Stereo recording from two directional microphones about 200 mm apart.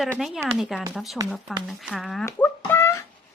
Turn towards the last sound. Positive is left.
turn(degrees=10)  # may be behind; listen again after turning